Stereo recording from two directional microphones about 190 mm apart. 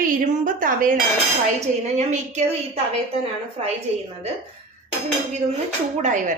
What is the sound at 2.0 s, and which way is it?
Speech, 40° right (ahead or behind).